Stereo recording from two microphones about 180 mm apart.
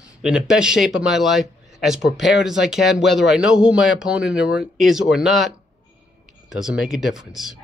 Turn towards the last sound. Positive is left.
turn(degrees=0)  # may be behind; listen again after turning